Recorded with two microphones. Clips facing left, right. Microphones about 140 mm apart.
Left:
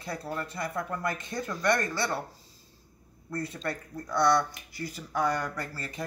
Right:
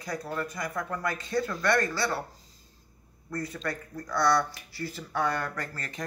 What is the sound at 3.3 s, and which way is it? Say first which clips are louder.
Speech: even; 25° left (ahead or behind).